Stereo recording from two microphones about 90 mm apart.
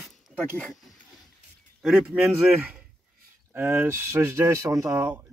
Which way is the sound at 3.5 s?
25° right (ahead or behind).